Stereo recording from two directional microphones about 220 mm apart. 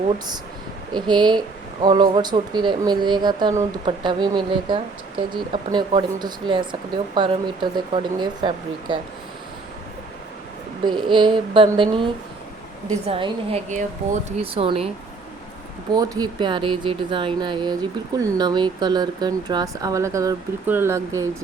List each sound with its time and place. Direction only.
0.9 s speech: 20° right (ahead or behind)
10.8 s speech: 20° right (ahead or behind)
16.0 s speech: 15° right (ahead or behind)